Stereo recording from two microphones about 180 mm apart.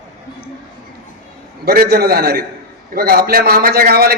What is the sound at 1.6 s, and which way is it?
A man's voice, 55° right (ahead or behind).